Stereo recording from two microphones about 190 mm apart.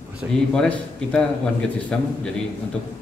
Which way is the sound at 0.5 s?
5° left (ahead or behind).